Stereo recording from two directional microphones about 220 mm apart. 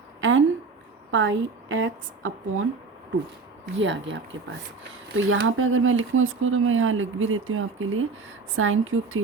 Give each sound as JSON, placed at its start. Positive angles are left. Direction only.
{"t": 0.2, "sound": "a sound", "side_deg": -60}
{"t": 1.1, "sound": "speech", "side_deg": -60}
{"t": 3.8, "sound": "speech", "side_deg": -55}